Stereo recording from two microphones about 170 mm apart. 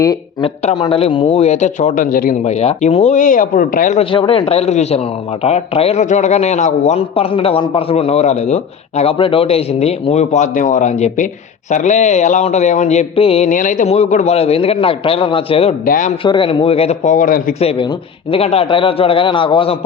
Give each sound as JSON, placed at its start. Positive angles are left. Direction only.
{"t": 0.4, "sound": "a man's voice", "side_deg": 40}
{"t": 2.5, "sound": "speech", "side_deg": 40}
{"t": 4.1, "sound": "a man's voice", "side_deg": 30}
{"t": 15.9, "sound": "speech", "side_deg": 50}
{"t": 16.2, "sound": "a man's voice", "side_deg": 30}
{"t": 17.6, "sound": "a man's voice", "side_deg": 35}